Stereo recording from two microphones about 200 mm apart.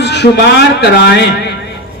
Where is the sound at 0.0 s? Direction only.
60° left (ahead or behind).